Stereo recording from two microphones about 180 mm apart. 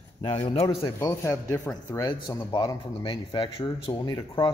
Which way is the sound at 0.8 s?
20° left (ahead or behind).